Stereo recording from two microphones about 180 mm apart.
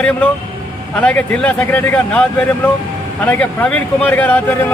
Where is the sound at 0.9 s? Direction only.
10° left (ahead or behind).